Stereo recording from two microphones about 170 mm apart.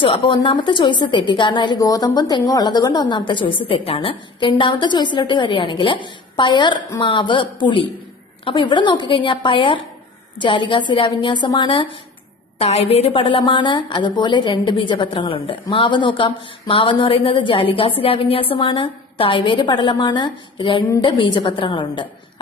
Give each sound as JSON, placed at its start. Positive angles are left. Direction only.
{"t": 0.0, "sound": "a woman's voice", "side_deg": 30}